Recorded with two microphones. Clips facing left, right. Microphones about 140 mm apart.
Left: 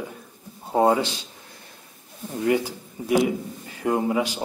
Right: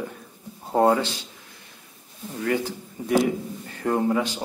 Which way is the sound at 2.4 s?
15° left (ahead or behind).